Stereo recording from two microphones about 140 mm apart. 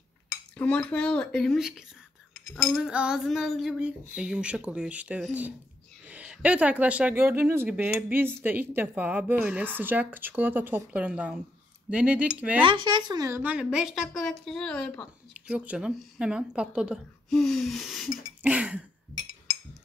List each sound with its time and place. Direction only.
0.6 s a woman's voice: 10° left (ahead or behind); by 12.6 s 10° right (ahead or behind)
12.6 s speech: 35° right (ahead or behind)
13.3 s a woman's voice: 10° right (ahead or behind); by 15.0 s 5° left (ahead or behind)
15.3 s speech: 10° right (ahead or behind)
17.3 s a woman's voice: 5° left (ahead or behind)
18.4 s speech: 10° right (ahead or behind)